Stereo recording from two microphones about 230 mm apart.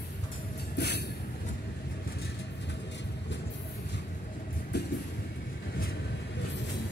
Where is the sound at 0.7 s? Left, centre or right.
Left.